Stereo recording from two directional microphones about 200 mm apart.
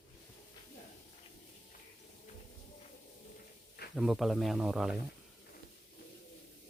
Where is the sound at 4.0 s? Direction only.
Centre (ahead or behind).